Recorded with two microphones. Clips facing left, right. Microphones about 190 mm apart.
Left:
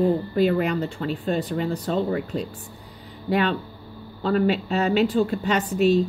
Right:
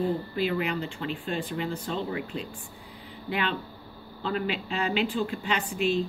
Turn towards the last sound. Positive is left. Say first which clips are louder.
# left 7 dB
turn(degrees=40)  # may be behind; listen again after turning